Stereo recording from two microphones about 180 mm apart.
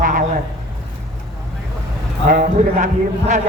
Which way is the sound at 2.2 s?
50° right (ahead or behind).